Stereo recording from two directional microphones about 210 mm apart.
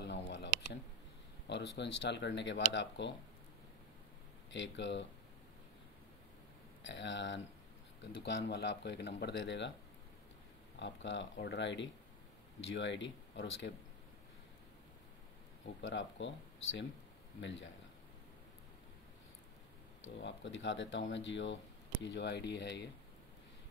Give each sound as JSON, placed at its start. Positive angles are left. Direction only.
{"t": 0.0, "sound": "a sound", "side_deg": 55}
{"t": 1.5, "sound": "speech", "side_deg": 55}
{"t": 4.5, "sound": "speech", "side_deg": 60}
{"t": 6.8, "sound": "speech", "side_deg": 55}
{"t": 10.8, "sound": "speech", "side_deg": 60}
{"t": 15.8, "sound": "speech", "side_deg": 60}
{"t": 20.2, "sound": "speech", "side_deg": 60}